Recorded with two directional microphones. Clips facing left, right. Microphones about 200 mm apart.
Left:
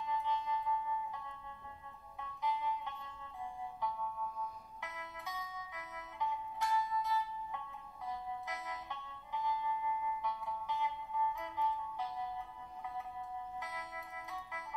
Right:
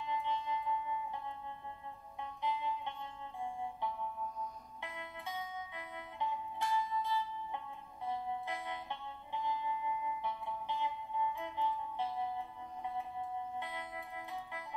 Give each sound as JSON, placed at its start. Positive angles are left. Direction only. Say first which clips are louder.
{"t": 0.0, "sound": "music", "louder": "even", "side_deg": -30}
{"t": 4.8, "sound": "music", "louder": "right 2 dB", "side_deg": -30}
{"t": 13.6, "sound": "music", "louder": "right 3 dB", "side_deg": -30}